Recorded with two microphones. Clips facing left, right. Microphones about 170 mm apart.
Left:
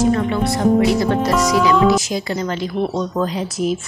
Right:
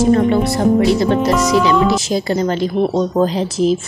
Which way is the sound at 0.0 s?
35° right (ahead or behind).